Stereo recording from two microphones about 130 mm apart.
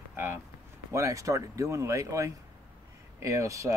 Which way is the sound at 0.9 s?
25° right (ahead or behind).